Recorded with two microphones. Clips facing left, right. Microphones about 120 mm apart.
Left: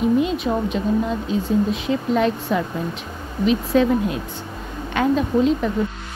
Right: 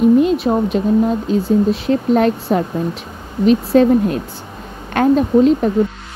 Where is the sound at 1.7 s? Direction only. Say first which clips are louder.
Right 6 dB; 50° right (ahead or behind).